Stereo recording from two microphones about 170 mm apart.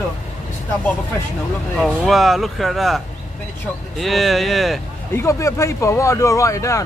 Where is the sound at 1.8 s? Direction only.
Centre (ahead or behind).